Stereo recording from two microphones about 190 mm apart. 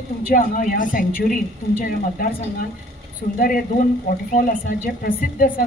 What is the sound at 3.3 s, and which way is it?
Speech, 45° left (ahead or behind).